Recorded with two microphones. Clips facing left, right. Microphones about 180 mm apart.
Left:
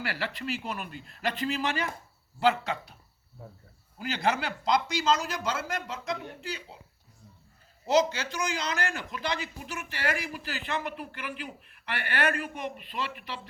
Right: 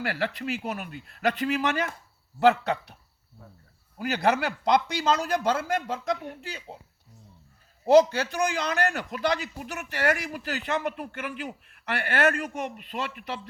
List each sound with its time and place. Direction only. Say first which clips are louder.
0.0 s a man's voice: right 4 dB; 55° right (ahead or behind)
3.9 s a man's voice: right 4 dB; 65° right (ahead or behind); by 6.7 s 45° right (ahead or behind)
7.9 s a man's voice: right 7 dB; 55° right (ahead or behind)